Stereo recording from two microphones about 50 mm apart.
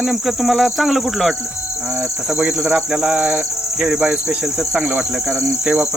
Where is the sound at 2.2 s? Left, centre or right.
Right.